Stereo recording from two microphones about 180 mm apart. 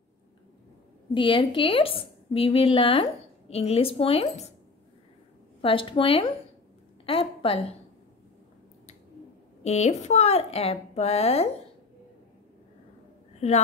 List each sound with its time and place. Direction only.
1.1 s a woman's voice: 30° left (ahead or behind)
5.6 s speech: 30° left (ahead or behind)
7.1 s a sound: 30° left (ahead or behind)
9.6 s a woman's voice: 40° left (ahead or behind)